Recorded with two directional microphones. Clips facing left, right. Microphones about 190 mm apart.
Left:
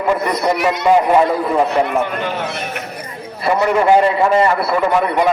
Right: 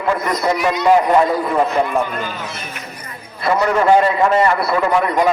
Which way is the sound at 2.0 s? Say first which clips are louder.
Left 4 dB; 70° left (ahead or behind).